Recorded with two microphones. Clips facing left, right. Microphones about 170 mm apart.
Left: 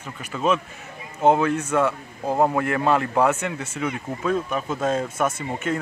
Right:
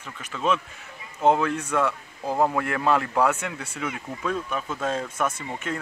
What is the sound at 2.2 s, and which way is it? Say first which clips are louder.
Speech: left 3 dB; 20° left (ahead or behind).